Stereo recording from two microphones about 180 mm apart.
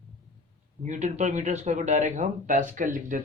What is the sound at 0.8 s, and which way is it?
Speech, 40° right (ahead or behind).